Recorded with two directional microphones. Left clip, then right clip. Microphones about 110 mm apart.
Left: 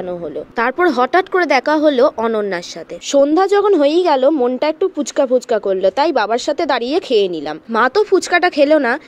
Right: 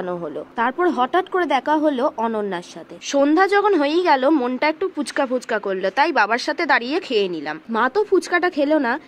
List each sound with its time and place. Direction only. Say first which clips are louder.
0.6 s speech: left 5 dB; 55° left (ahead or behind)
4.3 s a woman's voice: left 4 dB; 25° left (ahead or behind)
4.6 s speech: left 4 dB; 40° left (ahead or behind)